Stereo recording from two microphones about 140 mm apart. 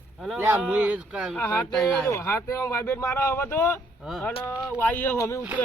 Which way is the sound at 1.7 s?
Centre (ahead or behind).